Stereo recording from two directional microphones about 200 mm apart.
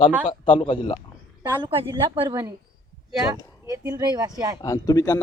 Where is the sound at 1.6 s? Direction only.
25° right (ahead or behind).